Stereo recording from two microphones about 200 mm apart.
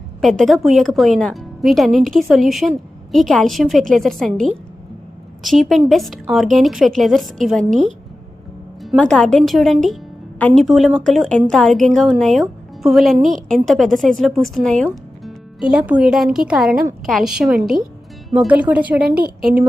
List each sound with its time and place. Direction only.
0.2 s a woman's voice: centre (ahead or behind)
7.7 s a woman's voice: 35° right (ahead or behind)
8.8 s a woman's voice: centre (ahead or behind)